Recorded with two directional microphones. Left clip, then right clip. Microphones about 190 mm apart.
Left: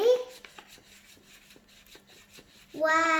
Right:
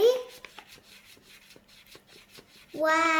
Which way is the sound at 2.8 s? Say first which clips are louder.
Even; 45° right (ahead or behind).